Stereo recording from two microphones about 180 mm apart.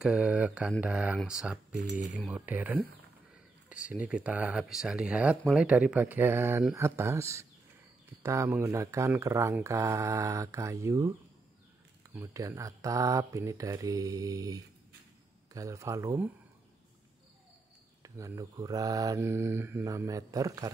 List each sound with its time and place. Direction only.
0.0 s speech: 5° right (ahead or behind)
18.0 s mantra: 20° right (ahead or behind)